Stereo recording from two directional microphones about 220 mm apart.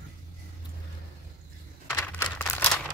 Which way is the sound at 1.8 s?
10° left (ahead or behind).